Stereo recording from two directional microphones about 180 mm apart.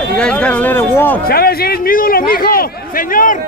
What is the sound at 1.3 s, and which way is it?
A man's voice, 60° left (ahead or behind).